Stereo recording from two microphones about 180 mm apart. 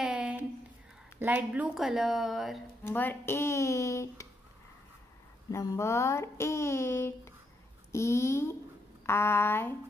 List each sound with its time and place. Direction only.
0.0 s a sound: 5° right (ahead or behind)
1.2 s a woman's voice: 10° right (ahead or behind)
2.8 s speech: 10° left (ahead or behind)
5.5 s speech: 20° left (ahead or behind)